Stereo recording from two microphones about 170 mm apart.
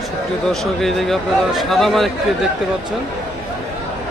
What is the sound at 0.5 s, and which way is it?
Speech, centre (ahead or behind).